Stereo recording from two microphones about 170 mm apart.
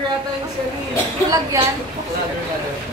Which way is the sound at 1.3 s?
20° right (ahead or behind).